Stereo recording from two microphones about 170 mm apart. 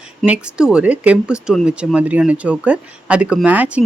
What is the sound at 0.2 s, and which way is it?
Speech, 5° right (ahead or behind).